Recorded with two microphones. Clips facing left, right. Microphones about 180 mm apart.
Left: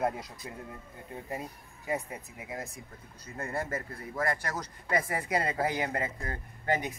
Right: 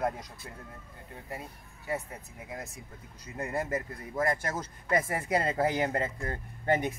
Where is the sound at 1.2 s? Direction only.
20° left (ahead or behind).